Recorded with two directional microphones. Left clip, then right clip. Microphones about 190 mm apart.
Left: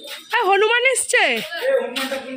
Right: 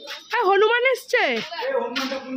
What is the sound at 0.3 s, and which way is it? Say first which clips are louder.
Music: left 2 dB; 5° right (ahead or behind).